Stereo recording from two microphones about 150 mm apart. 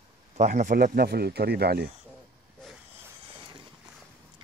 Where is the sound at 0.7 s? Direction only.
90° right.